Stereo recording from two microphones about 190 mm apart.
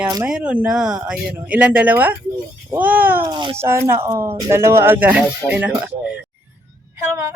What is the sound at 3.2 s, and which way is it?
Speech, 25° right (ahead or behind).